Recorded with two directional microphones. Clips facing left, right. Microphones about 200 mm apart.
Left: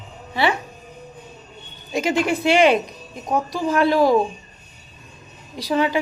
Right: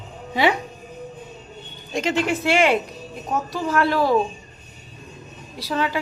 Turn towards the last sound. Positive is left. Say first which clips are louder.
# left 4 dB
turn(degrees=15)  # may be behind; listen again after turning